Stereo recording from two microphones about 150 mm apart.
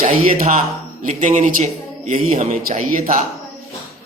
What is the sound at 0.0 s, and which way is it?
A man's voice, 50° right (ahead or behind).